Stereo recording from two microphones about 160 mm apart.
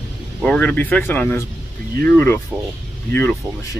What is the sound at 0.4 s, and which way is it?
Speech, 10° left (ahead or behind).